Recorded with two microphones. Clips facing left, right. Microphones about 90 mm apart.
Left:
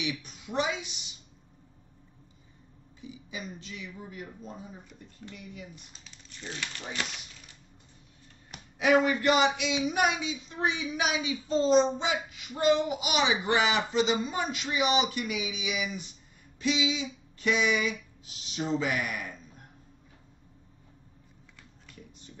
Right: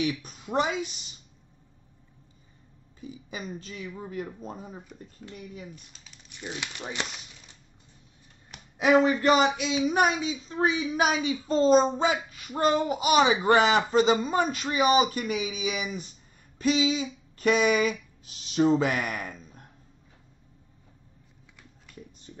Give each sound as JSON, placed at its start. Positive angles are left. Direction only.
{"t": 0.0, "sound": "a woman's voice", "side_deg": -45}
{"t": 3.0, "sound": "speech", "side_deg": -45}
{"t": 6.2, "sound": "speech", "side_deg": -15}
{"t": 8.7, "sound": "speech", "side_deg": -30}
{"t": 16.5, "sound": "a sound", "side_deg": -45}
{"t": 18.5, "sound": "speech", "side_deg": -50}